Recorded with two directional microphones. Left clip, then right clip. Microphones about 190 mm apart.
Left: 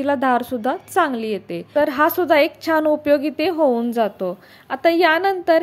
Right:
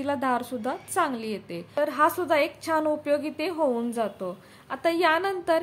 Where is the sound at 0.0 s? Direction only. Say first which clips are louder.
Left 8 dB; 25° left (ahead or behind).